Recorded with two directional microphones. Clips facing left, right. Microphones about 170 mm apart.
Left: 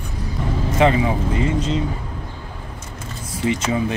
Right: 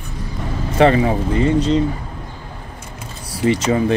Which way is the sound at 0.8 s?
40° right (ahead or behind).